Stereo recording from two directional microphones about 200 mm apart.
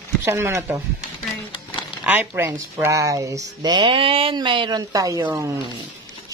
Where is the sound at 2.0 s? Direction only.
5° right (ahead or behind).